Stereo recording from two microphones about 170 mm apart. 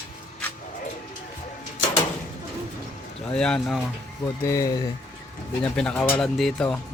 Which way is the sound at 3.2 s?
5° left (ahead or behind).